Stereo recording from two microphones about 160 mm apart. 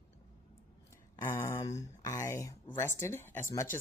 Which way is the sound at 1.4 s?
20° left (ahead or behind).